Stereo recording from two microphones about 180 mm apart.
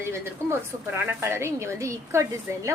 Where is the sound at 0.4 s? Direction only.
15° right (ahead or behind).